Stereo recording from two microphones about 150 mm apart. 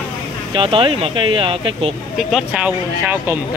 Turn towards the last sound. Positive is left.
turn(degrees=-10)  # may be behind; listen again after turning